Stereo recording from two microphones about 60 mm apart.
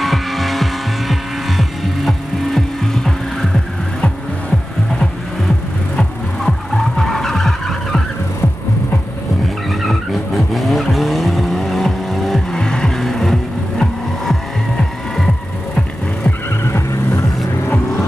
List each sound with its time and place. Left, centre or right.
0.0 s vehicle: centre
1.6 s music: centre
5.9 s vehicle: centre
9.7 s vehicle: centre
12.5 s music: centre
16.6 s vehicle: left